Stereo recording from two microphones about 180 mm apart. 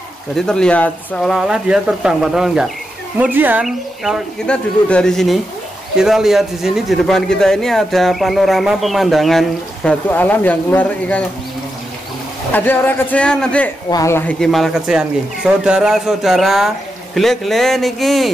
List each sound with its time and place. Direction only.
0.4 s a man's voice: 5° left (ahead or behind)
12.5 s speech: 10° left (ahead or behind)
13.8 s speech: 20° left (ahead or behind)
14.4 s a man's voice: centre (ahead or behind)